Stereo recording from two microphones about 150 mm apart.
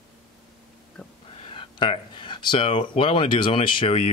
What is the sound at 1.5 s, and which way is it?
Speech, 35° left (ahead or behind).